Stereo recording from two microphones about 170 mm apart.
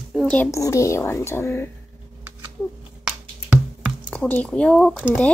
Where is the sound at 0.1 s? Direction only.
5° left (ahead or behind).